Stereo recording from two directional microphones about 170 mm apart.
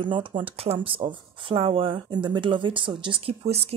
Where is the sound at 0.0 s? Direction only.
30° right (ahead or behind).